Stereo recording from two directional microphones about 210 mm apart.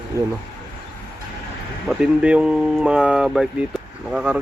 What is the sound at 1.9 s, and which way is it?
Speech, 5° right (ahead or behind).